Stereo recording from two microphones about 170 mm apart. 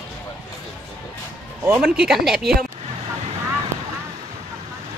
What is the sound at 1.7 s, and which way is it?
Speech, 5° right (ahead or behind).